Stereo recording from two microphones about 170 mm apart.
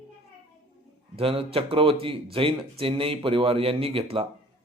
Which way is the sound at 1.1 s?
35° right (ahead or behind).